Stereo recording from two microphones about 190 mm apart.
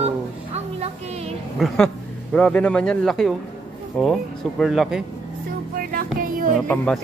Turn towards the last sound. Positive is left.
turn(degrees=5)  # may be behind; listen again after turning